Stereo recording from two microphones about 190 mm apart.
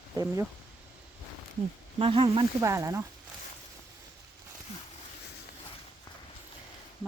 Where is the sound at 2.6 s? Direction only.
15° right (ahead or behind).